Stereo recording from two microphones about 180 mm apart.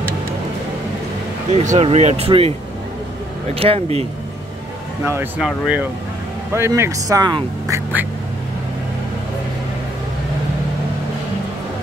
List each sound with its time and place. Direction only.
1.5 s speech: 40° right (ahead or behind)
3.5 s speech: 30° right (ahead or behind)
5.0 s speech: 15° right (ahead or behind)